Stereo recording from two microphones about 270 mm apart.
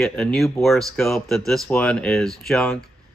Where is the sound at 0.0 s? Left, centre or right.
Centre.